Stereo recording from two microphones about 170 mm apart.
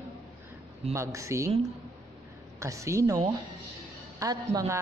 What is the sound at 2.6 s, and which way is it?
A woman's voice, 20° right (ahead or behind).